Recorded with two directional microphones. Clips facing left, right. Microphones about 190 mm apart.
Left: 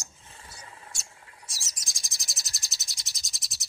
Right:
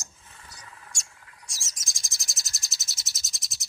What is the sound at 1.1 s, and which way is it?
Bird, 30° left (ahead or behind).